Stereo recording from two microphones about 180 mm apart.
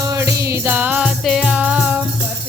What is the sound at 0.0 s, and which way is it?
Music, 20° right (ahead or behind).